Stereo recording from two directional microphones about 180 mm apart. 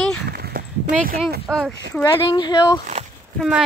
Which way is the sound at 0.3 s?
60° right (ahead or behind).